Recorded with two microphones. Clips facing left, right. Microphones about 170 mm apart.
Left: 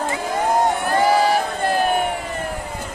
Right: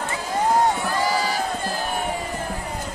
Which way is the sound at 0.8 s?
60° left (ahead or behind).